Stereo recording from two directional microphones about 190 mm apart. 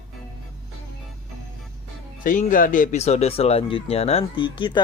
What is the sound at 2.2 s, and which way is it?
Speech, 45° left (ahead or behind).